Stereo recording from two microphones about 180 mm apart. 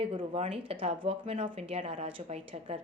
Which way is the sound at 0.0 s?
30° right (ahead or behind).